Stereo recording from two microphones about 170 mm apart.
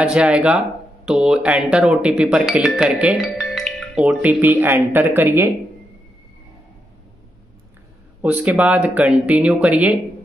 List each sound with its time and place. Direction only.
0.0 s speech: 5° right (ahead or behind)
8.2 s speech: 10° right (ahead or behind)